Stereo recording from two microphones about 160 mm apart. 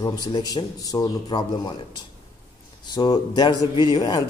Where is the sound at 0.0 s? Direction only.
25° left (ahead or behind).